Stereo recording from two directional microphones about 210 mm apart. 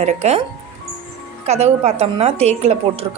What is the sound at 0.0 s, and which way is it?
Speech, 30° right (ahead or behind).